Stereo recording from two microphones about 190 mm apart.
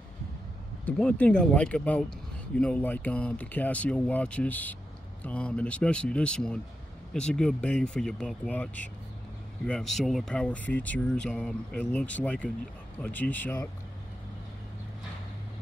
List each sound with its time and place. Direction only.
0.9 s a man's voice: 5° left (ahead or behind)